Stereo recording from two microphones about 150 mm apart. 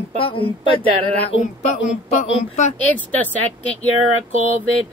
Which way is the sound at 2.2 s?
50° left (ahead or behind).